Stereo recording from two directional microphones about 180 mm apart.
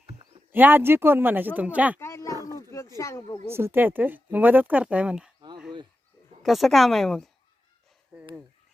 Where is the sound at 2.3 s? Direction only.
20° right (ahead or behind).